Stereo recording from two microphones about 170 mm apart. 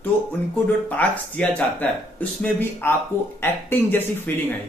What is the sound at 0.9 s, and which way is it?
Speech, 10° left (ahead or behind).